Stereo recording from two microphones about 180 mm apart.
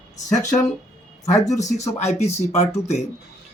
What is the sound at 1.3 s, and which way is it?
Speech, 40° left (ahead or behind).